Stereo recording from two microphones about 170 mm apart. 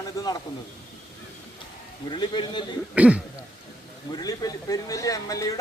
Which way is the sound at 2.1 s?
25° left (ahead or behind).